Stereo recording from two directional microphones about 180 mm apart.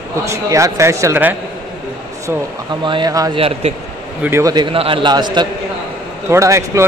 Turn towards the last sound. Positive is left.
turn(degrees=-15)  # may be behind; listen again after turning